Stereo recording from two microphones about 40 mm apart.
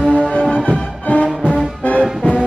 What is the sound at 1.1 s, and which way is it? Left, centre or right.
Music, left.